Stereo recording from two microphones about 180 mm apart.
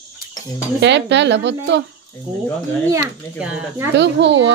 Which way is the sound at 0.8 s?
75° right (ahead or behind).